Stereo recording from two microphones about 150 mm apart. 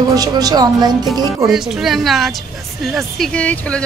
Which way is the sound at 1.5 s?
5° right (ahead or behind).